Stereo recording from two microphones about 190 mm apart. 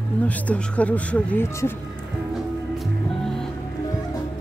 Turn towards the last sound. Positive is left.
turn(degrees=0)  # may be behind; listen again after turning